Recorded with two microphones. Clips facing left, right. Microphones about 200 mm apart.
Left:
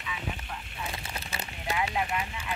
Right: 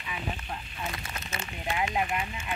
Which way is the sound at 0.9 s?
30° left (ahead or behind).